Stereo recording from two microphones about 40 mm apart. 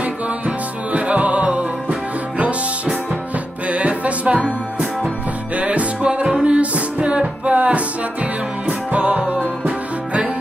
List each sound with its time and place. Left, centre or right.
0.0 s music: right
3.6 s music: right
5.6 s music: right